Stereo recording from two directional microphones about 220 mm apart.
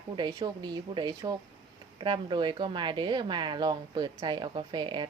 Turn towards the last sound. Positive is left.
turn(degrees=-20)  # may be behind; listen again after turning